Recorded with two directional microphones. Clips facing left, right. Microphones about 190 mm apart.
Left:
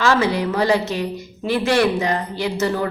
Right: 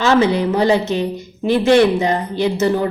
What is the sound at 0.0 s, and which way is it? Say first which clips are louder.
A woman's voice: right 4 dB; 20° right (ahead or behind).